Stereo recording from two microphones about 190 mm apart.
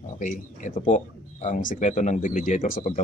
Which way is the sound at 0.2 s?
45° left (ahead or behind).